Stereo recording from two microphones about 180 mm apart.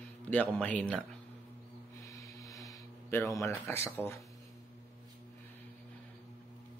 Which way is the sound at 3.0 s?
15° left (ahead or behind).